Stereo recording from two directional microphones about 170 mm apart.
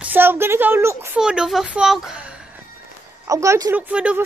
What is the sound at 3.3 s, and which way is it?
Speech, 20° right (ahead or behind).